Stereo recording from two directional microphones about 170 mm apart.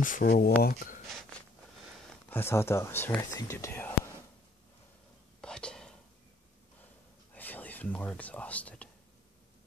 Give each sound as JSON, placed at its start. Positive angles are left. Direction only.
{"t": 0.0, "sound": "speech", "side_deg": 55}
{"t": 2.2, "sound": "speech", "side_deg": 15}
{"t": 5.4, "sound": "whispering", "side_deg": 5}
{"t": 7.3, "sound": "speech", "side_deg": 10}